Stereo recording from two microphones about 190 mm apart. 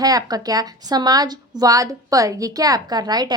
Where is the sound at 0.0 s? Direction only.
20° right (ahead or behind).